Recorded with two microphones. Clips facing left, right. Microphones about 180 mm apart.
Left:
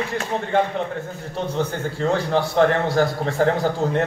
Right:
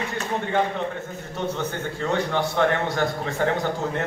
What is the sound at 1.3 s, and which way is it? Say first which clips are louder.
A man's voice: left 3 dB; 35° left (ahead or behind).